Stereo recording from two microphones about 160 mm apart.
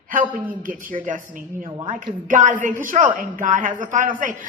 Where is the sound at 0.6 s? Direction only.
55° right (ahead or behind).